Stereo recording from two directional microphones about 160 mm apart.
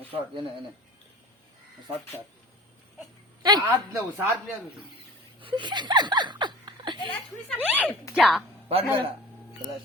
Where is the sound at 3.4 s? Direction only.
25° right (ahead or behind).